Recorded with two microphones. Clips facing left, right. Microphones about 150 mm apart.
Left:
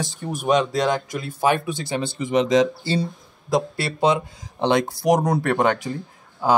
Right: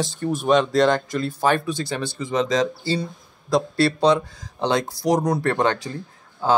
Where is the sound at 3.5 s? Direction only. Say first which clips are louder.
Right 3 dB; 15° left (ahead or behind).